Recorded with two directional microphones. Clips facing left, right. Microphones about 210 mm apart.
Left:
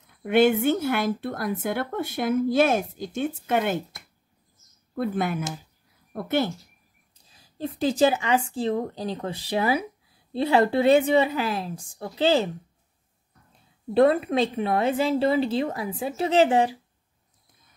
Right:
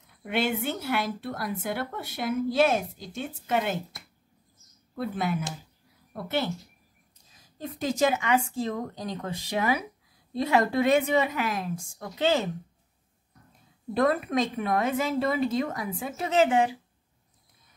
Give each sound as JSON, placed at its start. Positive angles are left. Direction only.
{"t": 0.2, "sound": "a woman's voice", "side_deg": 50}
{"t": 7.3, "sound": "a woman's voice", "side_deg": 30}
{"t": 13.9, "sound": "a woman's voice", "side_deg": 30}